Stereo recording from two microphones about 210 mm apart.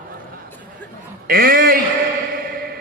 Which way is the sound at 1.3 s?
45° right (ahead or behind).